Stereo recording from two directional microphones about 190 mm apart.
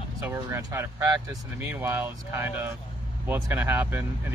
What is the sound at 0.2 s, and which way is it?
Speech, 15° right (ahead or behind).